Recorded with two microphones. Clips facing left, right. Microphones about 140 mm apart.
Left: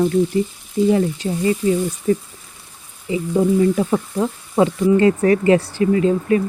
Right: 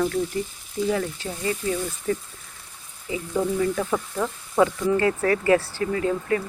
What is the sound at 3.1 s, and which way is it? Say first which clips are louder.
Frying: left 8 dB; 20° left (ahead or behind).